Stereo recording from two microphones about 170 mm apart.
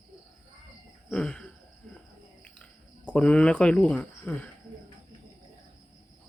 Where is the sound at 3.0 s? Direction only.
10° left (ahead or behind).